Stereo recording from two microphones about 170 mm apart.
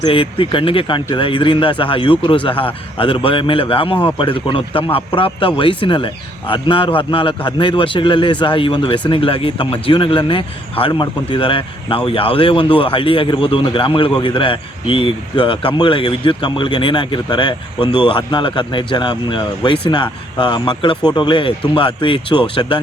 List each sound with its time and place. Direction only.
0.0 s a man's voice: 30° left (ahead or behind)